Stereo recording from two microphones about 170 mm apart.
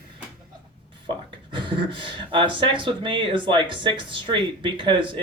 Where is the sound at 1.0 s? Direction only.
30° right (ahead or behind).